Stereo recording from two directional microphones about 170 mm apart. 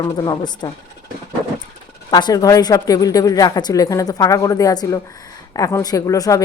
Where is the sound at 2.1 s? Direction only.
25° left (ahead or behind).